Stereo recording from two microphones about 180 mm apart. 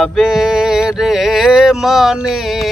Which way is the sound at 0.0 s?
Centre (ahead or behind).